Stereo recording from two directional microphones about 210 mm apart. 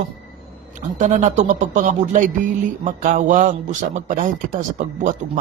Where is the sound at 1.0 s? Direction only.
35° right (ahead or behind).